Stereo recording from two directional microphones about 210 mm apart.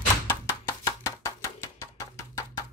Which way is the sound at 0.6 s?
15° left (ahead or behind).